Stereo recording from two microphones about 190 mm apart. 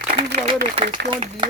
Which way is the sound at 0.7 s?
30° right (ahead or behind).